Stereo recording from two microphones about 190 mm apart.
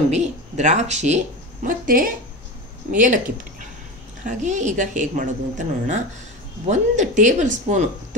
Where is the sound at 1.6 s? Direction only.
45° right (ahead or behind).